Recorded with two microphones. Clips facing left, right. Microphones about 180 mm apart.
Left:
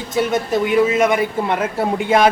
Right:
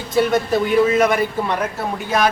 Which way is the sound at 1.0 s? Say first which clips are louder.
Left 1 dB; 20° left (ahead or behind).